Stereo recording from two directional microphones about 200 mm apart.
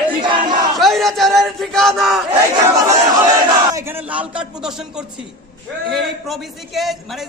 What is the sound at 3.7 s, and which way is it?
A man's voice, 10° right (ahead or behind).